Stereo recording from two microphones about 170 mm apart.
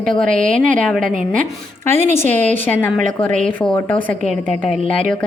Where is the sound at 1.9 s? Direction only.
45° right (ahead or behind).